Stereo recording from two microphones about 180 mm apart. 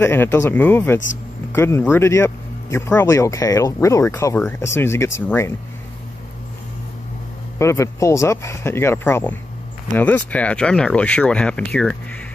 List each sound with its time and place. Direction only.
0.0 s speech: 10° left (ahead or behind)
7.5 s speech: 15° left (ahead or behind)